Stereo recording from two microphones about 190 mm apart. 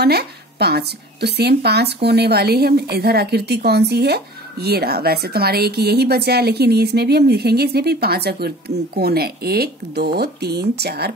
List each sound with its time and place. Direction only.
0.0 s speech: 60° right (ahead or behind)